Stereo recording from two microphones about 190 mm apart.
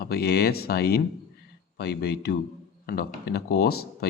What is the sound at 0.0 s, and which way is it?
Speech, 55° left (ahead or behind).